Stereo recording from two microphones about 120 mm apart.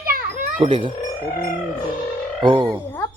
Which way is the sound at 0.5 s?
50° right (ahead or behind).